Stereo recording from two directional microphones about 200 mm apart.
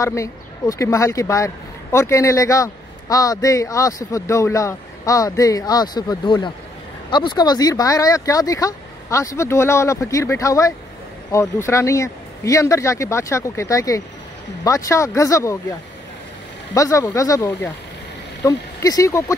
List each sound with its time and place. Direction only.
0.0 s speech: 15° left (ahead or behind)
16.7 s speech: 15° left (ahead or behind)